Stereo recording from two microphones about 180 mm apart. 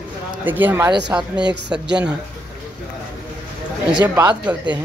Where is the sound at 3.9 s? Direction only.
20° right (ahead or behind).